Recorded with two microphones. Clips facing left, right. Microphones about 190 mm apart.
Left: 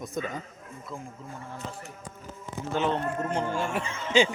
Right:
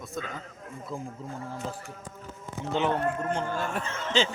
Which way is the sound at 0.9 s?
35° right (ahead or behind).